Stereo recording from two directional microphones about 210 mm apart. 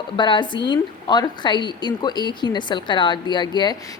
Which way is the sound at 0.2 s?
20° left (ahead or behind).